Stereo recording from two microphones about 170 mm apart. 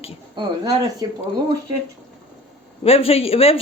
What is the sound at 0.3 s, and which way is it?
Speech, 25° right (ahead or behind).